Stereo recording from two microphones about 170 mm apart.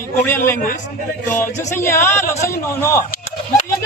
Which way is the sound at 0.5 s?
50° left (ahead or behind).